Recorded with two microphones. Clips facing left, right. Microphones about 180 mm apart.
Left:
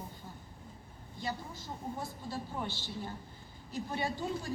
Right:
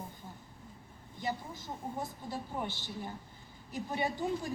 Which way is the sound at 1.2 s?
20° right (ahead or behind).